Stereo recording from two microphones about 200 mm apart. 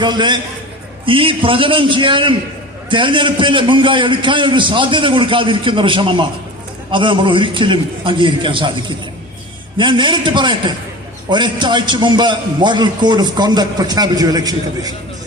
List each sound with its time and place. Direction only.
0.0 s a man's voice: 20° right (ahead or behind)
9.7 s a man's voice: 25° right (ahead or behind)